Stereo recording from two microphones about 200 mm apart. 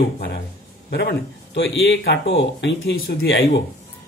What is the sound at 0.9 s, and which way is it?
Speech, 55° left (ahead or behind).